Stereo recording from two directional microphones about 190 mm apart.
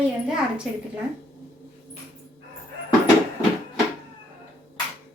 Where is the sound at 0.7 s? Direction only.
Centre (ahead or behind).